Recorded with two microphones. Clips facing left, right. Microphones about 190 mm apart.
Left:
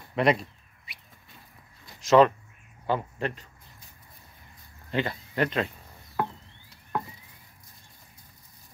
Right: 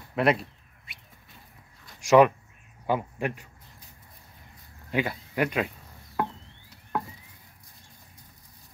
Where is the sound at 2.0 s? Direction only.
10° right (ahead or behind).